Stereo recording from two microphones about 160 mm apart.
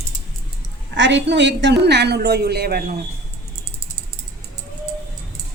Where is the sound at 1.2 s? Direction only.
90° right; by 2.9 s 70° right (ahead or behind).